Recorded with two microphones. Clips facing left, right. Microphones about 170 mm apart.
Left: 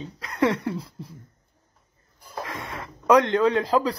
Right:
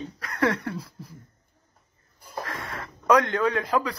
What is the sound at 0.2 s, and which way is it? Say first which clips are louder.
Speech: left 3 dB; 20° left (ahead or behind).